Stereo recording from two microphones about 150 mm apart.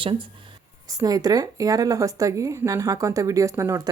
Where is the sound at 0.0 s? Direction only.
35° right (ahead or behind).